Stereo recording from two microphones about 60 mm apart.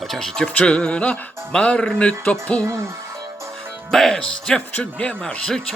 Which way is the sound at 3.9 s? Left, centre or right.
Centre.